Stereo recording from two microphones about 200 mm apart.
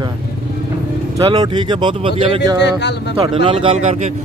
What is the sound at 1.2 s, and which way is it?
Speech, 20° right (ahead or behind).